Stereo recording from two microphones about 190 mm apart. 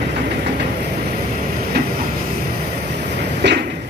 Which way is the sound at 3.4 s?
65° right (ahead or behind).